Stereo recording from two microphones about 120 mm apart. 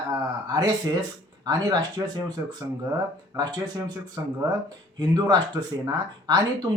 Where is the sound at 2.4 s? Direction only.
25° right (ahead or behind).